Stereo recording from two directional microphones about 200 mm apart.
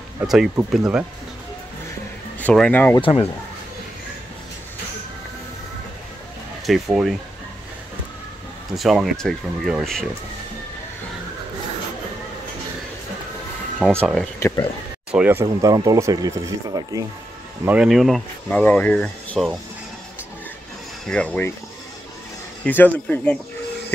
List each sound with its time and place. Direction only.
0.2 s speech: 5° right (ahead or behind)
2.4 s speech: 5° left (ahead or behind)
3.0 s speech: 25° left (ahead or behind)
6.6 s speech: centre (ahead or behind)
8.7 s speech: centre (ahead or behind)
13.7 s speech: 5° right (ahead or behind)
14.4 s speech: 20° left (ahead or behind)
15.0 s speech: 5° right (ahead or behind)
17.6 s speech: 5° right (ahead or behind)
21.1 s speech: 5° left (ahead or behind)
22.7 s speech: 10° left (ahead or behind)